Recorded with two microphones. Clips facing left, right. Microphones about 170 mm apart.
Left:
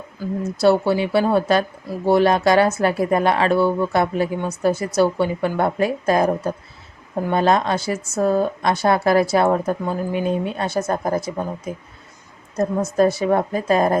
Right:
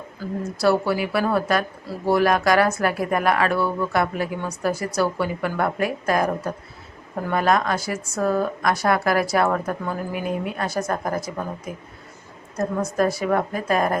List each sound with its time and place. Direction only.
0.2 s speech: 20° left (ahead or behind)